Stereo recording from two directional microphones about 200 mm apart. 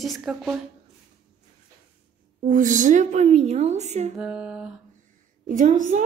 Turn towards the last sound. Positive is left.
turn(degrees=-40)  # may be behind; listen again after turning